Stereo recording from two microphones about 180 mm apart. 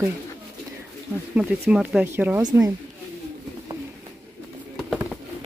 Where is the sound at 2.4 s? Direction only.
20° right (ahead or behind).